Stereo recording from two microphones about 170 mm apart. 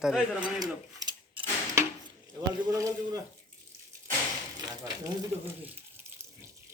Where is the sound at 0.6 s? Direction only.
20° right (ahead or behind).